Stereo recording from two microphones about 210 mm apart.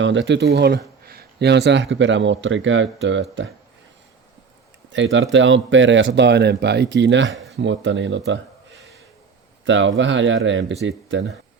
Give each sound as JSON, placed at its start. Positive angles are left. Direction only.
{"t": 0.0, "sound": "speech", "side_deg": -60}
{"t": 4.9, "sound": "speech", "side_deg": -60}
{"t": 7.3, "sound": "speech", "side_deg": 0}
{"t": 7.5, "sound": "speech", "side_deg": -60}
{"t": 9.6, "sound": "speech", "side_deg": -60}